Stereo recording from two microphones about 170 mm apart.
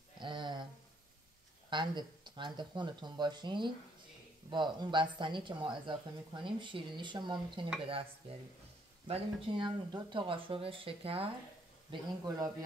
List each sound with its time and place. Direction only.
0.2 s a sound: 25° right (ahead or behind)
1.7 s speech: 25° right (ahead or behind)
11.9 s speech: 20° right (ahead or behind)